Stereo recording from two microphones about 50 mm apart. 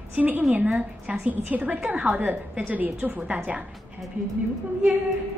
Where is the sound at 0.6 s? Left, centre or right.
Right.